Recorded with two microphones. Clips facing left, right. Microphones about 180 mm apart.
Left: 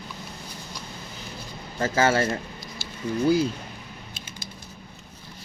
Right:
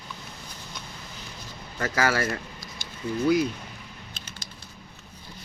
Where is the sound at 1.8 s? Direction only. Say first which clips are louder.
Left 4 dB; 25° left (ahead or behind).